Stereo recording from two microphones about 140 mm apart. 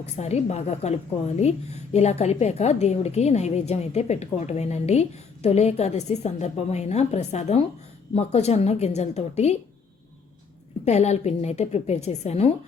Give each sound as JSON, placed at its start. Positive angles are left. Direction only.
{"t": 0.2, "sound": "a woman's voice", "side_deg": 50}
{"t": 10.8, "sound": "a woman's voice", "side_deg": 50}